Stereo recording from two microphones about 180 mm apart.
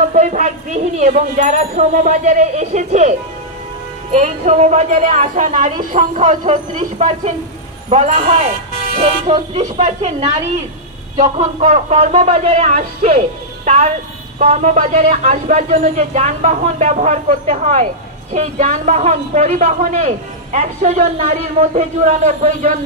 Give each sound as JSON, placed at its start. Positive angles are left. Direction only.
{"t": 0.1, "sound": "a woman's voice", "side_deg": -40}
{"t": 11.1, "sound": "a woman's voice", "side_deg": -40}